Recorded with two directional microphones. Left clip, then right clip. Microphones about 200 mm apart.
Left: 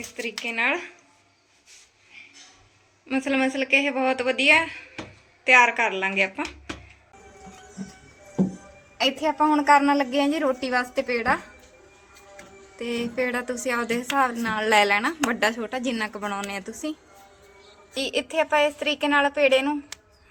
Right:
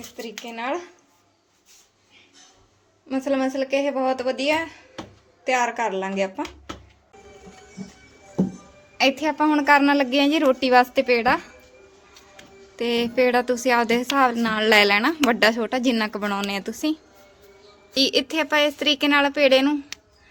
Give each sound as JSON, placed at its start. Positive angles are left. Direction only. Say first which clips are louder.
{"t": 0.2, "sound": "a woman's voice", "louder": "left 6 dB", "side_deg": -10}
{"t": 3.1, "sound": "a woman's voice", "louder": "right 1 dB", "side_deg": -10}
{"t": 9.0, "sound": "a woman's voice", "louder": "right 2 dB", "side_deg": -45}
{"t": 12.7, "sound": "a woman's voice", "louder": "right 6 dB", "side_deg": -55}
{"t": 17.9, "sound": "a woman's voice", "louder": "right 4 dB", "side_deg": -60}